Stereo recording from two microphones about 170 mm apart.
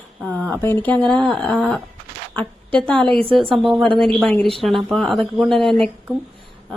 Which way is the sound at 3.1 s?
30° right (ahead or behind).